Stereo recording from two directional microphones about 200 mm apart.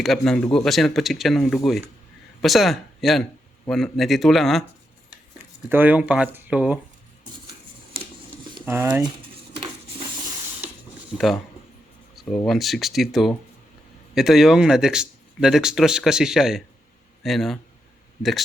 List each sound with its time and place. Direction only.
0.0 s speech: centre (ahead or behind)
5.6 s speech: 10° right (ahead or behind)
7.9 s a sound: 25° right (ahead or behind)
8.6 s speech: 10° right (ahead or behind)
12.5 s speech: centre (ahead or behind)